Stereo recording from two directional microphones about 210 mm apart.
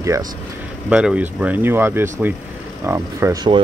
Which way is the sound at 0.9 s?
5° right (ahead or behind).